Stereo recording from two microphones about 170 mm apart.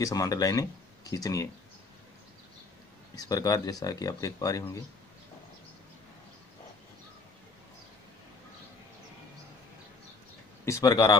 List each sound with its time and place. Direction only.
0.0 s speech: 20° left (ahead or behind)
3.2 s speech: 20° left (ahead or behind)
10.6 s speech: 20° left (ahead or behind)